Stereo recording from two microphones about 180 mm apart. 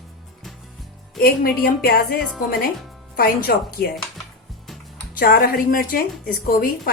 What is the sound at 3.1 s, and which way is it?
Speech, 55° left (ahead or behind).